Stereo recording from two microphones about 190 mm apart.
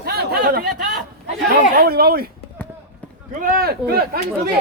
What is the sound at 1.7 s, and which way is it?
Speech, 55° right (ahead or behind).